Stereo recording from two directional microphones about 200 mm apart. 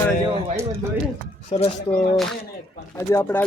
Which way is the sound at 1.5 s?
30° left (ahead or behind).